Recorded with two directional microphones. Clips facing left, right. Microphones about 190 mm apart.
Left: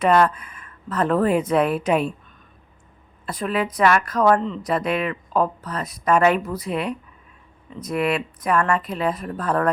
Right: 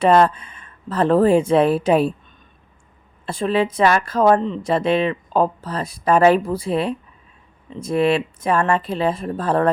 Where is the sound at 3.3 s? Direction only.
30° right (ahead or behind).